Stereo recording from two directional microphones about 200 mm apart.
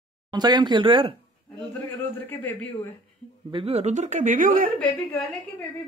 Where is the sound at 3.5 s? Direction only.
30° right (ahead or behind).